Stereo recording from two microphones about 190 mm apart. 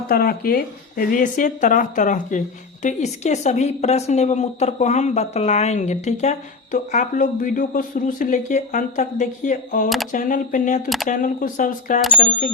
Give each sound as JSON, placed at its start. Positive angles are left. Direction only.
{"t": 0.1, "sound": "speech", "side_deg": 55}
{"t": 10.8, "sound": "speech", "side_deg": 0}
{"t": 11.1, "sound": "speech", "side_deg": 45}